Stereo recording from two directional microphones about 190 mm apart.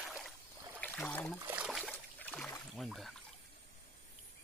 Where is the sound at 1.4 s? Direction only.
10° right (ahead or behind); by 2.6 s 5° left (ahead or behind).